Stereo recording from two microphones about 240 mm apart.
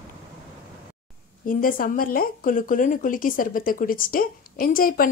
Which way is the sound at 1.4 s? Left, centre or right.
Left.